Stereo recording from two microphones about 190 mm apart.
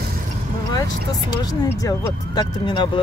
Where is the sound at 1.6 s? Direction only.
15° left (ahead or behind).